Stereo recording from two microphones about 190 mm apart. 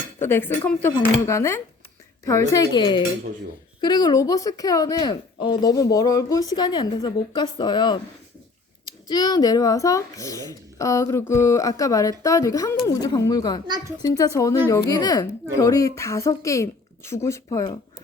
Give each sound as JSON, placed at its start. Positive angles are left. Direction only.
{"t": 0.2, "sound": "a woman's voice", "side_deg": 10}
{"t": 13.7, "sound": "a child's voice", "side_deg": -20}
{"t": 14.0, "sound": "speech", "side_deg": 15}